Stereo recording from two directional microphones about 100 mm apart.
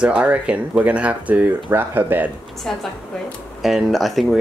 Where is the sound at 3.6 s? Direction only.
Centre (ahead or behind).